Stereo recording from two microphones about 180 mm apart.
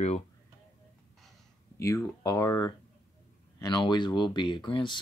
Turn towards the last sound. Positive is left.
turn(degrees=25)  # may be behind; listen again after turning